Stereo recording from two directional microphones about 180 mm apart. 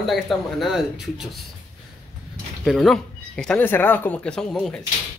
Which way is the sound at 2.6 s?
Centre (ahead or behind).